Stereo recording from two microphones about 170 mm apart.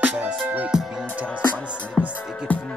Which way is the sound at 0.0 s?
5° right (ahead or behind).